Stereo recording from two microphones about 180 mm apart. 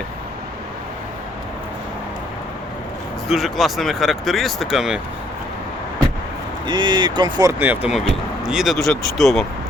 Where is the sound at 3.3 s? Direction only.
Centre (ahead or behind).